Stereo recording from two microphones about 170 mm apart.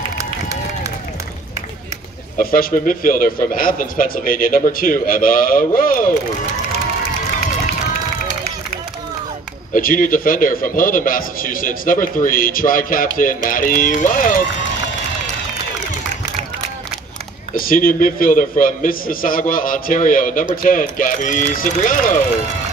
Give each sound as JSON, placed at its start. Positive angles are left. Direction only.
{"t": 2.3, "sound": "a man's voice", "side_deg": 60}
{"t": 9.8, "sound": "a man's voice", "side_deg": 55}
{"t": 17.6, "sound": "a man's voice", "side_deg": 55}